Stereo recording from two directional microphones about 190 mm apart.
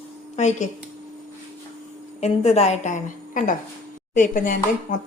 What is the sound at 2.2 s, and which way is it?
A woman's voice, 35° left (ahead or behind).